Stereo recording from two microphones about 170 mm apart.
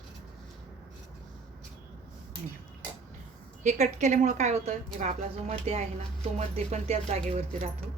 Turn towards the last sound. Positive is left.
turn(degrees=-40)  # may be behind; listen again after turning